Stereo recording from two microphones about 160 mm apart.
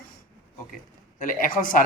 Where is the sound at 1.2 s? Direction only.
60° left (ahead or behind).